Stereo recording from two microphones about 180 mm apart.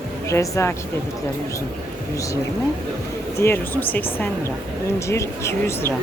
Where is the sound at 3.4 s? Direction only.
10° left (ahead or behind).